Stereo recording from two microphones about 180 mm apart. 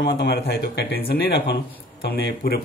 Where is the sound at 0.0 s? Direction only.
60° left (ahead or behind).